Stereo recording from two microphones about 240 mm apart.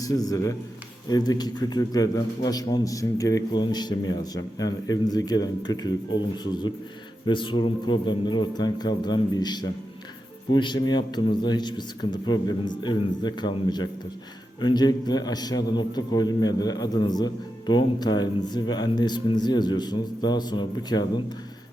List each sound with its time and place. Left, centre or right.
0.0 s a man's voice: centre